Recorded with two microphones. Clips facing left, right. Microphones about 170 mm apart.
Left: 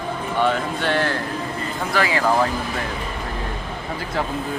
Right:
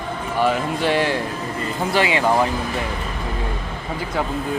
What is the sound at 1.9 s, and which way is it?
Speech, 25° right (ahead or behind).